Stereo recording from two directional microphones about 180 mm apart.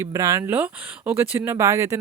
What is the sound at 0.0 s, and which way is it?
Speech, 15° right (ahead or behind).